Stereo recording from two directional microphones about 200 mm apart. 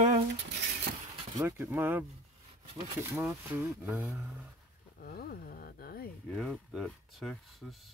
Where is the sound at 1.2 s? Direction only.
15° right (ahead or behind).